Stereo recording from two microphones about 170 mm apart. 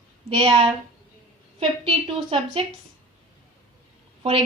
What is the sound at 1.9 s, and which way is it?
Speech, 35° right (ahead or behind).